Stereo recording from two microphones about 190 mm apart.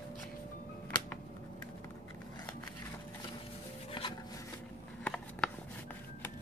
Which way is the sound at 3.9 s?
30° left (ahead or behind).